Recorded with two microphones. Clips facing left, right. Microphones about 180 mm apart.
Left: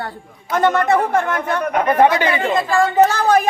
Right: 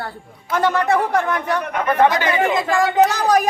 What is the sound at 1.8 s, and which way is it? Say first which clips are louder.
Speech: left 2 dB; 15° left (ahead or behind).